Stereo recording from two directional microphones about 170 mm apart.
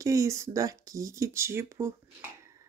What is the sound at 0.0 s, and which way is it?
Speech, 20° right (ahead or behind).